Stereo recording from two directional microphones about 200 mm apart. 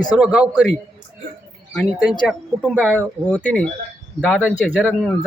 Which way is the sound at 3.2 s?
5° left (ahead or behind).